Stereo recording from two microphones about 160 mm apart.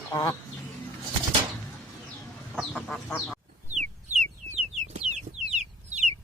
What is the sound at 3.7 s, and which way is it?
Chicken, 45° right (ahead or behind).